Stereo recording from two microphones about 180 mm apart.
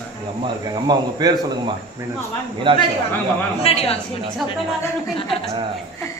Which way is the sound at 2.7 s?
25° right (ahead or behind).